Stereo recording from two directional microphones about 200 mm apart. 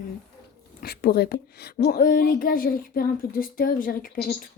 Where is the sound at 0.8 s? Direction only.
50° left (ahead or behind).